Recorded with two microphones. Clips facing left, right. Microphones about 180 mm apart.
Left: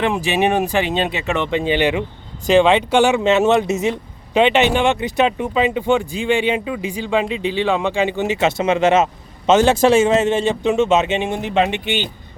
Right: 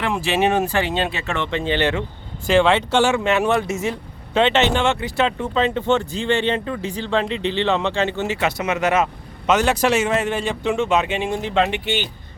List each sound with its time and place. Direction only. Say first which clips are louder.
0.0 s a man's voice: left 2 dB; 15° left (ahead or behind)